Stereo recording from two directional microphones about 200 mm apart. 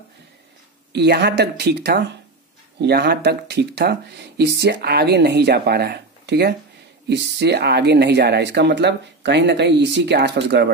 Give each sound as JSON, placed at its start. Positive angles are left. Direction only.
{"t": 0.9, "sound": "speech", "side_deg": -55}